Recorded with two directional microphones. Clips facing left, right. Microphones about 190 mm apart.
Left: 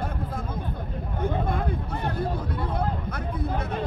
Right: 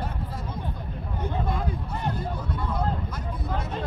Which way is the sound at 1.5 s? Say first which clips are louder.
Left 2 dB; 55° left (ahead or behind).